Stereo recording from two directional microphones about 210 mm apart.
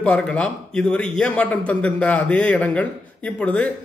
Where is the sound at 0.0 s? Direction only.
5° left (ahead or behind).